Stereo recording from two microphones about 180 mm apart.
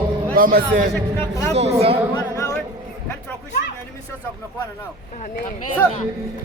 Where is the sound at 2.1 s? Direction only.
15° left (ahead or behind).